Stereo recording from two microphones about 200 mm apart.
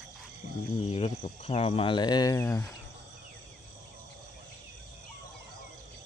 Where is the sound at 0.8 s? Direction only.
30° left (ahead or behind); by 2.6 s 15° left (ahead or behind).